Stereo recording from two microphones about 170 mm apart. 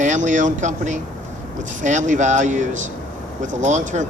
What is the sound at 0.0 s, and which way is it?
Speech, 45° right (ahead or behind).